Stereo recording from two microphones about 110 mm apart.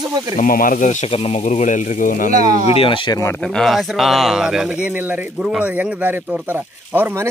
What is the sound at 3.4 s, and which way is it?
Speech, 5° left (ahead or behind).